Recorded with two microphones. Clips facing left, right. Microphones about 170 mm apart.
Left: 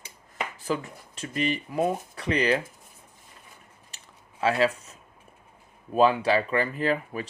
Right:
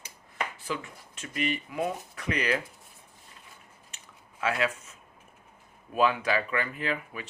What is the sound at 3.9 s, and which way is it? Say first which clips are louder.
Chewing: left 1 dB; 35° left (ahead or behind).